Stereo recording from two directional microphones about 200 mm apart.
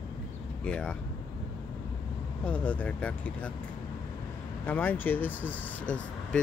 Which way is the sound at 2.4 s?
5° left (ahead or behind).